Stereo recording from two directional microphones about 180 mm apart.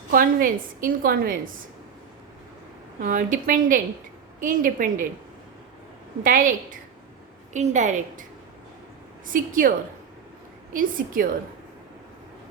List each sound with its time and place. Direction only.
0.1 s a woman's voice: 50° right (ahead or behind)
3.0 s a woman's voice: 45° right (ahead or behind)
6.2 s a woman's voice: 50° right (ahead or behind)
9.2 s a woman's voice: 50° right (ahead or behind)